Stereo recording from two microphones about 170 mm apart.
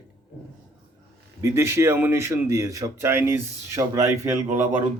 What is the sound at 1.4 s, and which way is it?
Speech, 15° right (ahead or behind).